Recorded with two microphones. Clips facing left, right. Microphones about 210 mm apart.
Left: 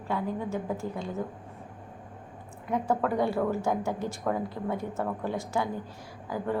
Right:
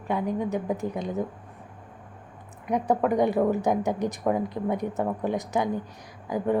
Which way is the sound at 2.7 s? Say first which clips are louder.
Right 4 dB; 15° right (ahead or behind).